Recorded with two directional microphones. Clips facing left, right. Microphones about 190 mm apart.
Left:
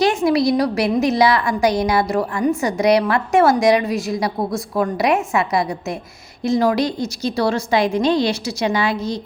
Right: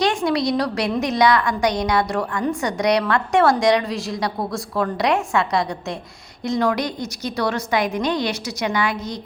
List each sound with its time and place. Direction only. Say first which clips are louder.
0.0 s a woman's voice: left 4 dB; 25° left (ahead or behind)